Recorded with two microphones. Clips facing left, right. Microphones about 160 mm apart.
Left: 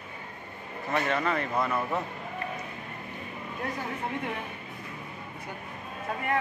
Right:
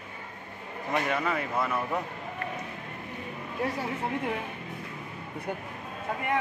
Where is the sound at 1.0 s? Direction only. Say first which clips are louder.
Left 1 dB; 10° right (ahead or behind).